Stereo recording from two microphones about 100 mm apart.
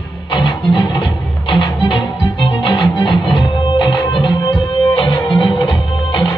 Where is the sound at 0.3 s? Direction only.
50° left (ahead or behind).